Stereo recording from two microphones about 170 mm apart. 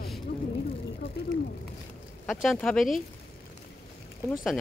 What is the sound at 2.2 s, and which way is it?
Speech, centre (ahead or behind).